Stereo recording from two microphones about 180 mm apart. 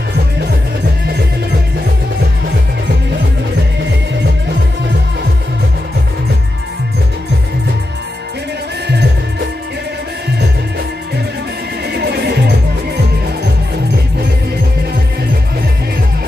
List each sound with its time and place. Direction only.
8.8 s music: 70° right (ahead or behind)
11.9 s music: 65° right (ahead or behind)